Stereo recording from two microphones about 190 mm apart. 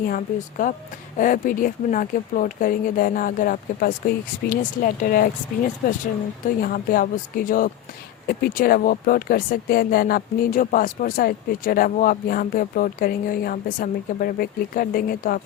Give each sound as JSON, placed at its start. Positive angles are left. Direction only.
{"t": 0.1, "sound": "speech", "side_deg": 45}